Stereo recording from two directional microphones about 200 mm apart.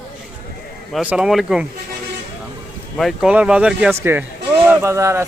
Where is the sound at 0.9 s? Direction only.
5° right (ahead or behind).